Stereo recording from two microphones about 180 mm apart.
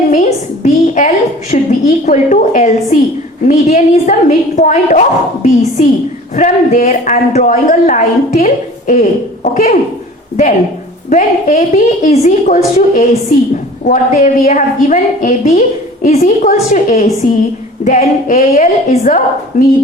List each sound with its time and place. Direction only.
0.1 s a sound: 45° left (ahead or behind)
3.4 s a woman's voice: 45° left (ahead or behind)
11.1 s a woman's voice: 45° left (ahead or behind)